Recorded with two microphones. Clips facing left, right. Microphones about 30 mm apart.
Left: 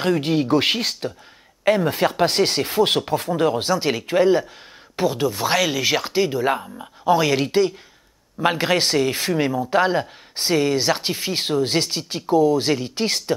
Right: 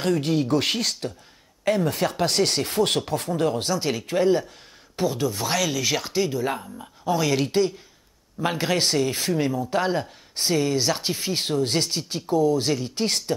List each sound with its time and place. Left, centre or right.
0.0 s speech: left